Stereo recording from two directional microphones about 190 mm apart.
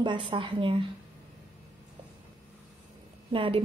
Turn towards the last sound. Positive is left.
turn(degrees=-30)  # may be behind; listen again after turning